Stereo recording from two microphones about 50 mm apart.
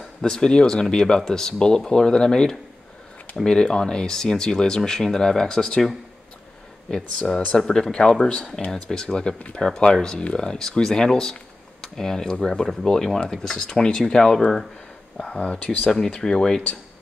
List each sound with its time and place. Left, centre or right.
0.2 s cutlery: centre
7.2 s cutlery: centre
15.3 s speech: left
15.9 s cutlery: centre